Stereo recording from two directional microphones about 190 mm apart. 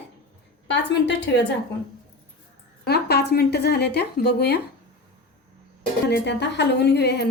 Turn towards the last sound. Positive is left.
turn(degrees=60)  # may be behind; listen again after turning